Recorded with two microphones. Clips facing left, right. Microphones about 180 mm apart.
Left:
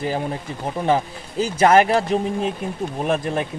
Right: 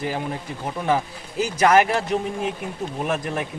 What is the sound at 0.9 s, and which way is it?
A man's voice, 30° left (ahead or behind).